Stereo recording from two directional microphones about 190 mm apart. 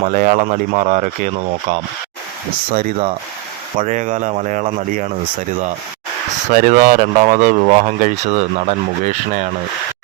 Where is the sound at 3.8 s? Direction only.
40° right (ahead or behind).